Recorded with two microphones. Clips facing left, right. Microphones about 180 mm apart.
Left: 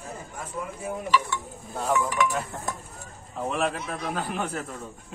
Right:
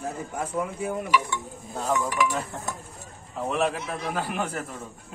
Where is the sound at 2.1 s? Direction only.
Centre (ahead or behind).